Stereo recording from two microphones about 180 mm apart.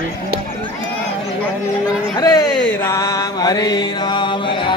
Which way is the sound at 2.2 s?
20° left (ahead or behind).